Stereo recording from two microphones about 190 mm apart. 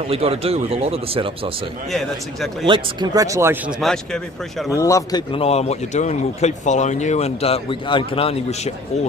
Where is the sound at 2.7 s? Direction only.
25° right (ahead or behind); by 4.7 s centre (ahead or behind).